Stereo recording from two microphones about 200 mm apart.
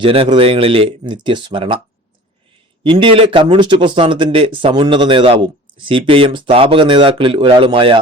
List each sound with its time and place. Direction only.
0.0 s speech: 25° right (ahead or behind)
2.8 s speech: 25° right (ahead or behind)